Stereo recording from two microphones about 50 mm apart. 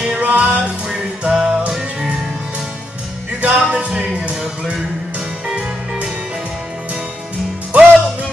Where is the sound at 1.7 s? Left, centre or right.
Centre.